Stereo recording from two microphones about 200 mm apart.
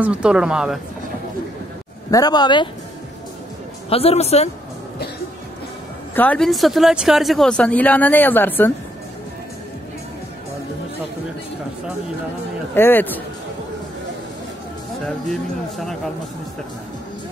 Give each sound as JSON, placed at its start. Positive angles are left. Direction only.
{"t": 0.0, "sound": "speech", "side_deg": -5}
{"t": 2.0, "sound": "speech", "side_deg": 20}
{"t": 3.9, "sound": "a woman's voice", "side_deg": 30}
{"t": 6.1, "sound": "speech", "side_deg": 5}
{"t": 12.7, "sound": "speech", "side_deg": 10}